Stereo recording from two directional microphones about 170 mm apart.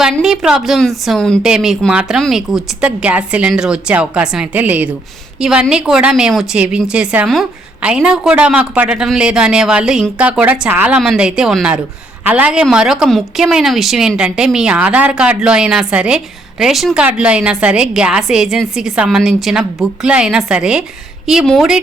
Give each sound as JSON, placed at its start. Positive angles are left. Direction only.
{"t": 0.0, "sound": "speech", "side_deg": -5}